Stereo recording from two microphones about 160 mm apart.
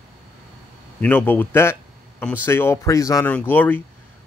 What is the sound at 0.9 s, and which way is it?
Speech, 10° left (ahead or behind).